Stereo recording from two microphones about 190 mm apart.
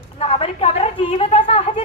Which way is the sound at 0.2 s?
30° left (ahead or behind).